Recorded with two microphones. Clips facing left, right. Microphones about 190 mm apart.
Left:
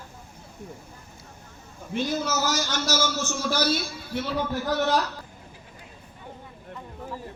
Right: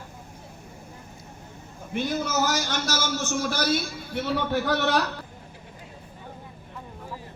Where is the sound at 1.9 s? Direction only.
60° right (ahead or behind).